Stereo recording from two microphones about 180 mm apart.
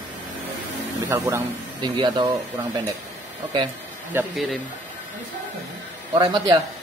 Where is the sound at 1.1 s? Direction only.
15° right (ahead or behind).